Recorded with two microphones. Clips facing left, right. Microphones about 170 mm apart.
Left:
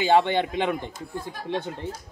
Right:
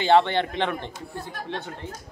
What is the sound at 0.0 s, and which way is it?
Speech, 10° left (ahead or behind).